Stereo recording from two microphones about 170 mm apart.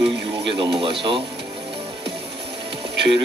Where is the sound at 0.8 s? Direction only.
30° right (ahead or behind).